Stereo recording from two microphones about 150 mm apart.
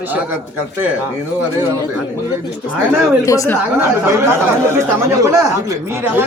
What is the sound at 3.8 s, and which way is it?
A woman's voice, 15° right (ahead or behind).